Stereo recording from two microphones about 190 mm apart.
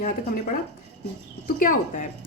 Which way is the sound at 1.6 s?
45° left (ahead or behind).